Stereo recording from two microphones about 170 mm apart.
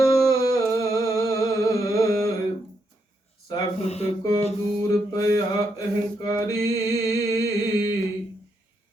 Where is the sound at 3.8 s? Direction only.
40° left (ahead or behind).